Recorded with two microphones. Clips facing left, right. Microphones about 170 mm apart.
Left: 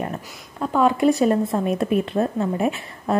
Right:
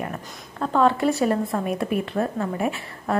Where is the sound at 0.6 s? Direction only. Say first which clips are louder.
Left 2 dB; 10° left (ahead or behind).